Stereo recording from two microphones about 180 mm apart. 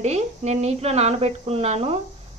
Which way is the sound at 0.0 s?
35° right (ahead or behind).